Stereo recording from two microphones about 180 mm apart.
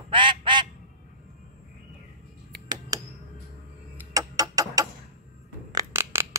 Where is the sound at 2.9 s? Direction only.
20° right (ahead or behind).